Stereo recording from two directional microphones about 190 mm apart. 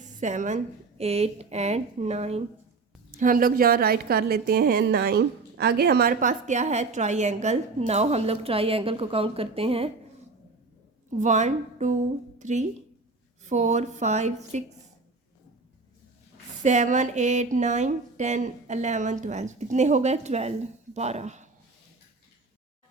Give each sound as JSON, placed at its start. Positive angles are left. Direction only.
{"t": 0.0, "sound": "a woman's voice", "side_deg": -40}
{"t": 3.2, "sound": "a woman's voice", "side_deg": -45}
{"t": 11.2, "sound": "a woman's voice", "side_deg": -40}
{"t": 16.6, "sound": "a woman's voice", "side_deg": -40}